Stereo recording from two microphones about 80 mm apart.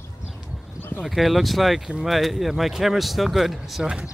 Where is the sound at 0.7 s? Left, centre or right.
Left.